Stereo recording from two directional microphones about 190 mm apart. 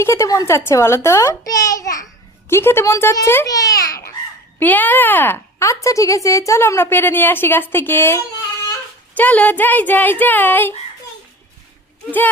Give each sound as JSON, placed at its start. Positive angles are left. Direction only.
{"t": 0.0, "sound": "speech", "side_deg": 15}